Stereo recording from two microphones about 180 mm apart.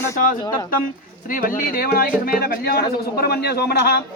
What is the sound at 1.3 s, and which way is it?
A man's voice, 50° left (ahead or behind).